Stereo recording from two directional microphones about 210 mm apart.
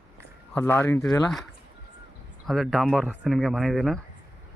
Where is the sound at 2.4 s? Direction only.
Centre (ahead or behind).